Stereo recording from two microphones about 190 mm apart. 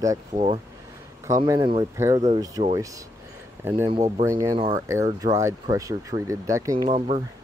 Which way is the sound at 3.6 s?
10° right (ahead or behind).